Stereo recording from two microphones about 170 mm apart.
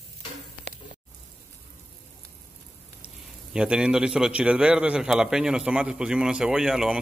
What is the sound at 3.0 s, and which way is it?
A man's voice, 5° right (ahead or behind).